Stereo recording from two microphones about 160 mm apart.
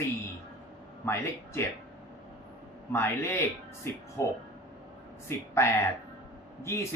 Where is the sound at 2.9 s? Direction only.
15° left (ahead or behind).